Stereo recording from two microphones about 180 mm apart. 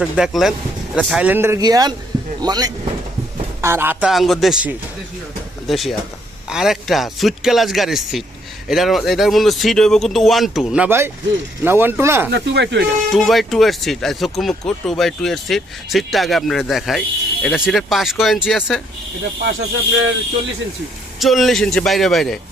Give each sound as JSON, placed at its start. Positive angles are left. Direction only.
{"t": 0.0, "sound": "speech", "side_deg": 0}
{"t": 4.1, "sound": "speech", "side_deg": 0}
{"t": 12.3, "sound": "speech", "side_deg": -70}
{"t": 13.1, "sound": "speech", "side_deg": 0}
{"t": 19.5, "sound": "snake", "side_deg": -90}
{"t": 21.2, "sound": "speech", "side_deg": 0}